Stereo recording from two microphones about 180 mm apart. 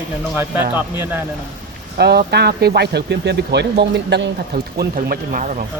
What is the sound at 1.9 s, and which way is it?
Speech, 60° right (ahead or behind).